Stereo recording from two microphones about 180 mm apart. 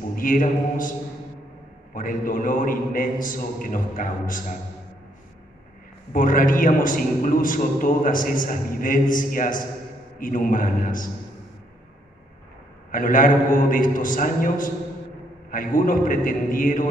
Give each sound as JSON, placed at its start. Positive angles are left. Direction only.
{"t": 0.1, "sound": "a man's voice", "side_deg": 50}
{"t": 2.0, "sound": "a man's voice", "side_deg": 50}
{"t": 6.1, "sound": "a man's voice", "side_deg": 50}
{"t": 12.9, "sound": "a man's voice", "side_deg": 50}